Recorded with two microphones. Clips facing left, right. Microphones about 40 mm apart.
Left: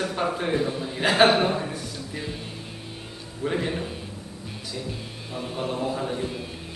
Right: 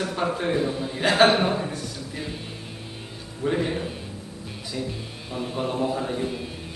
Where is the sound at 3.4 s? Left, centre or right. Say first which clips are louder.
Right 2 dB; centre.